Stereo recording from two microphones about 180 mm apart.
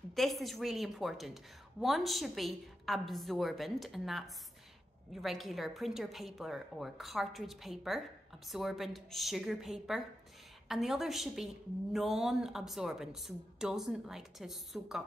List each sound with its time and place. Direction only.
0.1 s a woman's voice: centre (ahead or behind)